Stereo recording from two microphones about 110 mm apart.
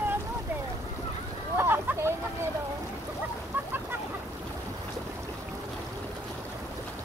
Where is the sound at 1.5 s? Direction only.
20° right (ahead or behind).